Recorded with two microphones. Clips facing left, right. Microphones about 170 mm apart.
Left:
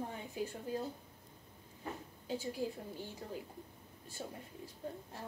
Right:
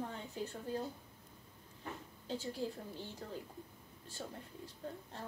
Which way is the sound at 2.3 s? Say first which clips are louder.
Left 2 dB; 10° left (ahead or behind).